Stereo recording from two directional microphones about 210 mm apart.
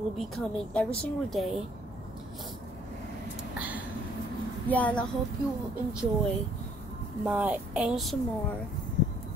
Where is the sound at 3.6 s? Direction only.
5° right (ahead or behind).